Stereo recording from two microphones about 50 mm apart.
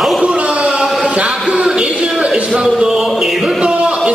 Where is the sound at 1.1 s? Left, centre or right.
Right.